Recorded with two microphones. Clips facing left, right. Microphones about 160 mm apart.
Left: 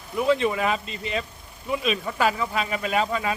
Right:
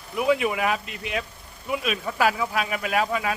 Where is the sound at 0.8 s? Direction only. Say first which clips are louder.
Left 2 dB; 65° right (ahead or behind).